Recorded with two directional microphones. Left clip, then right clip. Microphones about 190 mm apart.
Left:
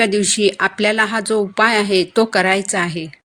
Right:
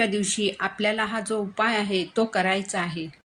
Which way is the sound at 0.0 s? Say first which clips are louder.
Left 9 dB; 50° left (ahead or behind).